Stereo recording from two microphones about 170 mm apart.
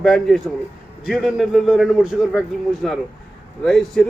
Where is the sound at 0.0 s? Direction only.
Centre (ahead or behind).